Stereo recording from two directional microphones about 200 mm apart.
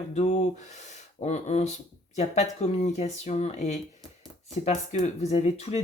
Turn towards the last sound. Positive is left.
turn(degrees=30)  # may be behind; listen again after turning